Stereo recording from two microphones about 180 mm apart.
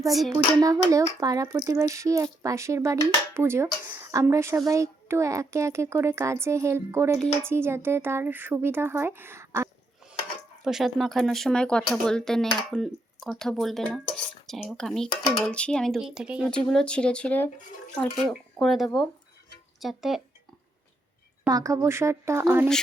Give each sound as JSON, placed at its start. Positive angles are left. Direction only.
{"t": 0.1, "sound": "speech", "side_deg": 0}
{"t": 0.3, "sound": "speech", "side_deg": -20}
{"t": 10.6, "sound": "speech", "side_deg": 0}
{"t": 16.6, "sound": "speech", "side_deg": 5}
{"t": 21.5, "sound": "speech", "side_deg": -20}